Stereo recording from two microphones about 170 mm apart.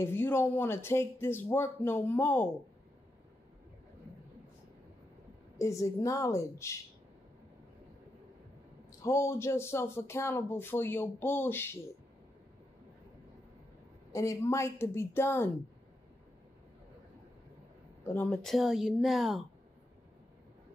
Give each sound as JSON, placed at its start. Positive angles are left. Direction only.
{"t": 0.0, "sound": "speech", "side_deg": 15}
{"t": 5.6, "sound": "speech", "side_deg": 20}
{"t": 9.0, "sound": "speech", "side_deg": 15}
{"t": 14.1, "sound": "speech", "side_deg": 20}
{"t": 18.0, "sound": "speech", "side_deg": 10}